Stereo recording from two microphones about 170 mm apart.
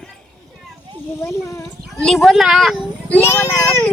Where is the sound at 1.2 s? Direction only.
20° left (ahead or behind).